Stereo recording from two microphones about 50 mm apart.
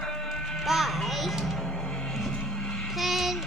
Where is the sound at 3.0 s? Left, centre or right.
Centre.